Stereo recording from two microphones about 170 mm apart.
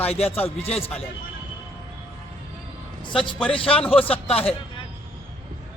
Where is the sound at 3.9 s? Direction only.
35° left (ahead or behind).